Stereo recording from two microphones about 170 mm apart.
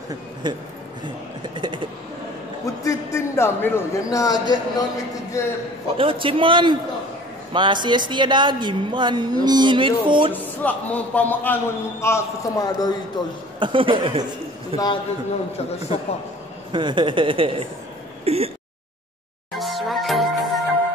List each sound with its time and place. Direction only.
0.1 s a woman's voice: 25° right (ahead or behind)
1.6 s a woman's voice: 30° right (ahead or behind)
2.6 s a man's voice: 20° left (ahead or behind)
5.9 s a woman's voice: 30° right (ahead or behind)
10.6 s a man's voice: 10° left (ahead or behind); by 13.3 s 25° left (ahead or behind)
13.6 s a woman's voice: 30° right (ahead or behind)
16.7 s a woman's voice: 30° right (ahead or behind)
18.2 s a sound: 35° right (ahead or behind)
19.6 s music: centre (ahead or behind)